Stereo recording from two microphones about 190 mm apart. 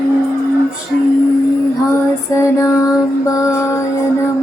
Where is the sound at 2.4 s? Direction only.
15° left (ahead or behind).